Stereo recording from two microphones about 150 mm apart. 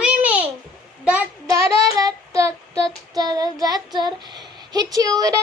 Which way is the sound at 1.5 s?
25° right (ahead or behind).